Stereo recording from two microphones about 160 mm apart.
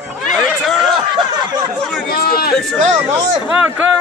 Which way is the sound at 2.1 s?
70° left (ahead or behind).